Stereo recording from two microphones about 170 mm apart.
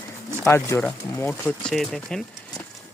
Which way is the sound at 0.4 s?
20° left (ahead or behind).